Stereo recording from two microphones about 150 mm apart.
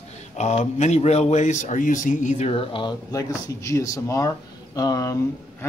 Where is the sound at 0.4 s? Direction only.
50° left (ahead or behind).